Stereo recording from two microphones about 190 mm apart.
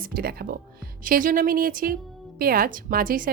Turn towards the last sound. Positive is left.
turn(degrees=-45)  # may be behind; listen again after turning